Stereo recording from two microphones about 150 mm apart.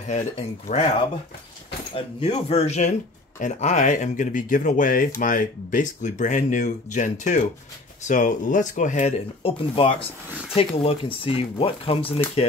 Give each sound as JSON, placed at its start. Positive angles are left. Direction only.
{"t": 0.1, "sound": "speech", "side_deg": 50}
{"t": 2.0, "sound": "speech", "side_deg": 40}
{"t": 9.4, "sound": "speech", "side_deg": 40}